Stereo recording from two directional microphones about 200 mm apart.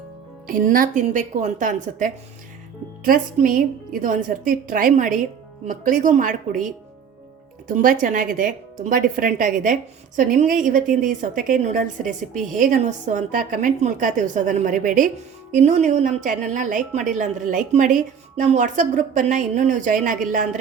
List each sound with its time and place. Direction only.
0.4 s a woman's voice: 45° right (ahead or behind)
7.8 s a woman's voice: 45° right (ahead or behind)